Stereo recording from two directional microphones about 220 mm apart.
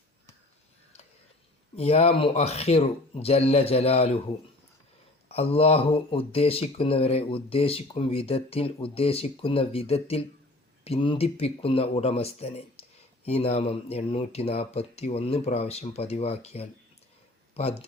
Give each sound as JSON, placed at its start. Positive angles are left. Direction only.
{"t": 1.7, "sound": "speech", "side_deg": 30}
{"t": 5.3, "sound": "speech", "side_deg": 25}